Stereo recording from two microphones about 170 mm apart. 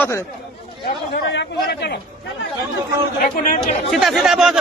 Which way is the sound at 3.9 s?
Centre (ahead or behind).